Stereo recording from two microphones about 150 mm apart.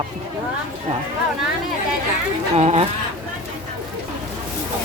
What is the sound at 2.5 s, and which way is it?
Speech, 45° right (ahead or behind).